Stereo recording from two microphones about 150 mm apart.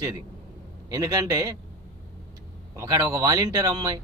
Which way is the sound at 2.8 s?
20° right (ahead or behind).